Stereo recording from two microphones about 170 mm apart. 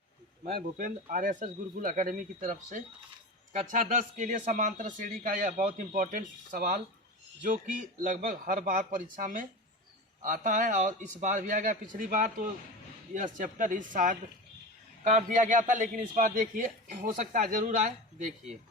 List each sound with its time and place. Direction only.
0.4 s speech: 60° right (ahead or behind)
1.1 s a man's voice: 50° right (ahead or behind)